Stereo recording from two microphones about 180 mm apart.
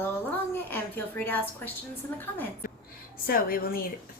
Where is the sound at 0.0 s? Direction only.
10° left (ahead or behind).